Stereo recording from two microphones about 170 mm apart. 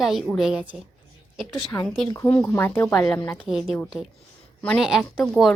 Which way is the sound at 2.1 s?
15° left (ahead or behind).